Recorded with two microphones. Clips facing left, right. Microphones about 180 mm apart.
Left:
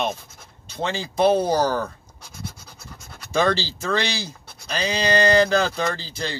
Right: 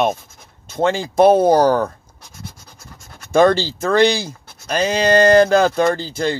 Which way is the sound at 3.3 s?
50° right (ahead or behind).